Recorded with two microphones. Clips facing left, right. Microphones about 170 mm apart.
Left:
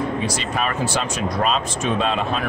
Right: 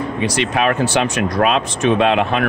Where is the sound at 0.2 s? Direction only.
70° right (ahead or behind).